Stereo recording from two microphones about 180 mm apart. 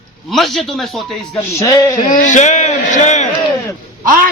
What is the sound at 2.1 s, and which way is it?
A man's voice, 45° left (ahead or behind).